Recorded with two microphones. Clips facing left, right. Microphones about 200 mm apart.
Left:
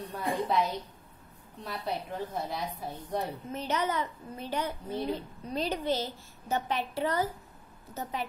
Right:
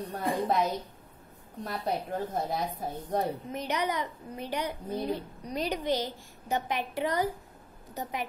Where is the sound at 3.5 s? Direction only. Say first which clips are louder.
Even; 15° right (ahead or behind).